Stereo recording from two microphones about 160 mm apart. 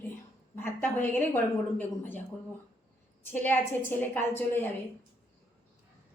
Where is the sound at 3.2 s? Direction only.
10° left (ahead or behind).